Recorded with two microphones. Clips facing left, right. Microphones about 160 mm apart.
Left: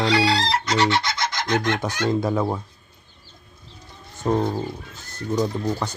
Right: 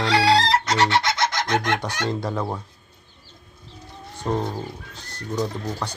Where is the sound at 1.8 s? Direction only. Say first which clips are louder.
Left 4 dB; 10° left (ahead or behind).